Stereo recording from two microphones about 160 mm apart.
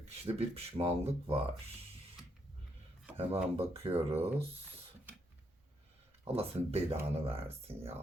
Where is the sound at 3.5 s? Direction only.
40° right (ahead or behind).